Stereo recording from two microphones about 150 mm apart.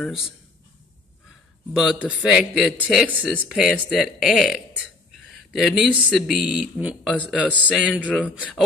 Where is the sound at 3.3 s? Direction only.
5° right (ahead or behind).